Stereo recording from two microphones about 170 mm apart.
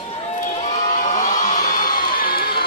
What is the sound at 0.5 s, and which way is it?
Crowd, 40° left (ahead or behind).